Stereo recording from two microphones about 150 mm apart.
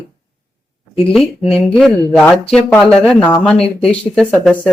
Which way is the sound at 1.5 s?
5° left (ahead or behind).